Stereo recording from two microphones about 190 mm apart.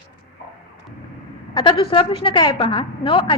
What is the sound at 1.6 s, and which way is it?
A woman's voice, 25° left (ahead or behind).